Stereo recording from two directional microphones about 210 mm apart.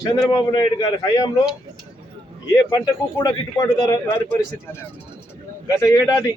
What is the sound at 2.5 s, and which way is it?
A man's voice, 15° left (ahead or behind).